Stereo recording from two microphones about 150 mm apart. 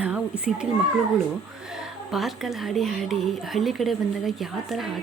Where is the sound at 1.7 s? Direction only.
Centre (ahead or behind).